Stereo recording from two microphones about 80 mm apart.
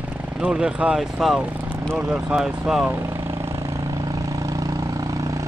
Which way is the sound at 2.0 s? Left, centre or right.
Centre.